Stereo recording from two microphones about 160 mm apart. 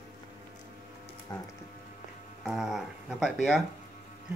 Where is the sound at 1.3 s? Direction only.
20° left (ahead or behind).